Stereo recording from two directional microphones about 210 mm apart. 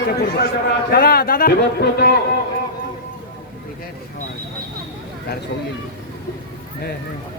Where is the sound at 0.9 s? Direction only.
45° left (ahead or behind).